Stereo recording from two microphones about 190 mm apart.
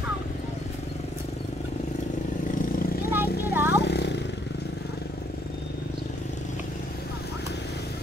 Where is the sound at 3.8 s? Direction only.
60° left (ahead or behind).